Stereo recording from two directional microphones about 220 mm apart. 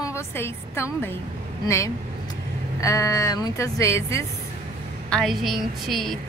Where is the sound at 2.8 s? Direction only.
15° left (ahead or behind).